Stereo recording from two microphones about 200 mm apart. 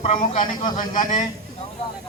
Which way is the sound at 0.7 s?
40° left (ahead or behind).